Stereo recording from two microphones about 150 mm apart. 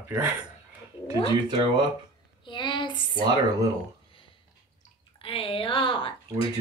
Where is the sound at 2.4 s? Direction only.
30° left (ahead or behind).